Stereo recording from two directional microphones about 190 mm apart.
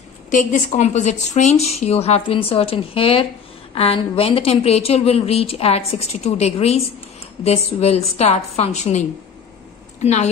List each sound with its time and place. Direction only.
0.3 s a woman's voice: 40° left (ahead or behind)